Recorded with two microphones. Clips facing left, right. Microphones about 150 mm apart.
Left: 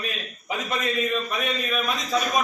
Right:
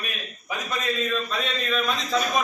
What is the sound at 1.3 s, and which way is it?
Speech, 15° left (ahead or behind).